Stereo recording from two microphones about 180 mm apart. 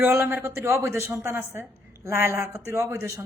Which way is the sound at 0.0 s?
15° right (ahead or behind).